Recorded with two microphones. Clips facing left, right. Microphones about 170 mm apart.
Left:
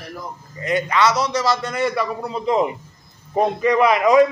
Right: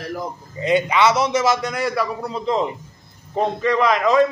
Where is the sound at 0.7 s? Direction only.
25° right (ahead or behind).